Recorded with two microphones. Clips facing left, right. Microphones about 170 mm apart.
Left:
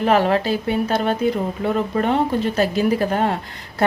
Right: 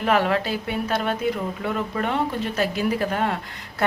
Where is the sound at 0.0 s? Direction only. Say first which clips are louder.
Left 4 dB; 30° left (ahead or behind).